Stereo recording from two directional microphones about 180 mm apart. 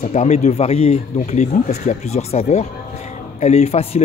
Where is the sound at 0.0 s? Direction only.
40° left (ahead or behind).